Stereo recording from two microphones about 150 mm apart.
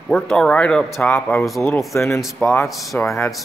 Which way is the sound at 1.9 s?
20° left (ahead or behind).